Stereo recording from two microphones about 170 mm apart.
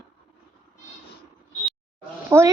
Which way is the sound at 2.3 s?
15° right (ahead or behind).